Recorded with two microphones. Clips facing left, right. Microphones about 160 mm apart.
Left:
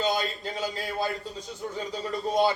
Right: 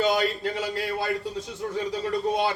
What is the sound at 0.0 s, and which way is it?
A man's voice, 70° right (ahead or behind).